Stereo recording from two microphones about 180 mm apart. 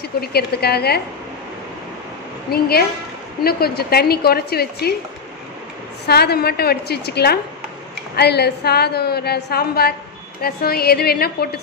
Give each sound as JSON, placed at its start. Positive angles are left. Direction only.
{"t": 0.2, "sound": "a woman's voice", "side_deg": 60}
{"t": 2.5, "sound": "a woman's voice", "side_deg": 60}
{"t": 6.0, "sound": "a woman's voice", "side_deg": 65}